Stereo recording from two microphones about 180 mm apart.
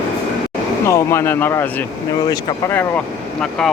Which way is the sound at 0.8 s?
15° left (ahead or behind).